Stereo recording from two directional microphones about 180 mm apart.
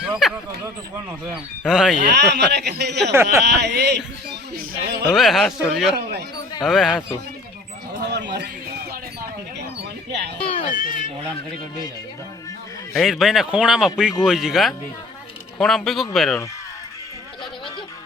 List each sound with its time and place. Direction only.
0.0 s speech: centre (ahead or behind)
1.6 s speech: centre (ahead or behind)
2.0 s speech: 70° right (ahead or behind)
5.1 s speech: centre (ahead or behind)
8.0 s a sound: 70° right (ahead or behind)
10.4 s speech: 30° left (ahead or behind)
10.8 s speech: 50° left (ahead or behind)
12.9 s speech: centre (ahead or behind)